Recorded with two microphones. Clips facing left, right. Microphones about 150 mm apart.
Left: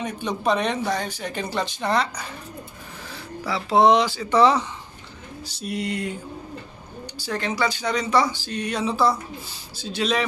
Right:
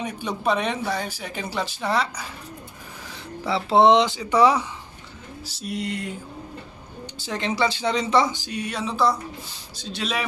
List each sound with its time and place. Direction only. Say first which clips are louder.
0.0 s speech: left 1 dB; 10° right (ahead or behind)
3.4 s speech: right 1 dB; 25° right (ahead or behind); by 6.1 s centre (ahead or behind)
7.2 s speech: right 1 dB; 20° right (ahead or behind); by 10.2 s centre (ahead or behind)